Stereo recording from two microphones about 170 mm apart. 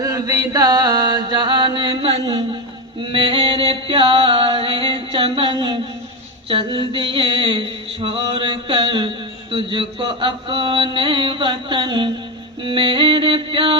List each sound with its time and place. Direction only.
0.0 s chant: 20° right (ahead or behind)
3.0 s mantra: 30° right (ahead or behind)
12.6 s music: 30° right (ahead or behind)